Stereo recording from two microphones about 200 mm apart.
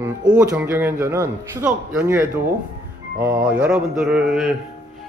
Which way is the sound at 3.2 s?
5° right (ahead or behind).